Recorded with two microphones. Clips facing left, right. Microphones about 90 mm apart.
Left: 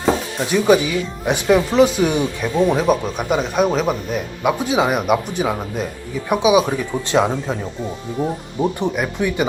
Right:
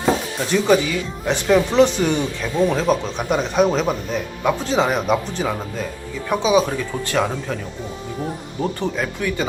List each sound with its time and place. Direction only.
0.0 s music: 5° left (ahead or behind)
1.5 s speech: 5° left (ahead or behind)